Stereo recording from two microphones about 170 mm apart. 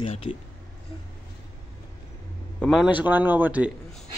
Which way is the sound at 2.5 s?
5° left (ahead or behind).